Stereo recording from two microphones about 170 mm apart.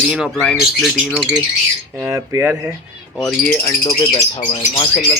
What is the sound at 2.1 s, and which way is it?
Speech, 15° right (ahead or behind).